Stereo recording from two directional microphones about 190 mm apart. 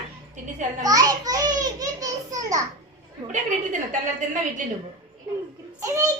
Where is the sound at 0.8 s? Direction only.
20° right (ahead or behind).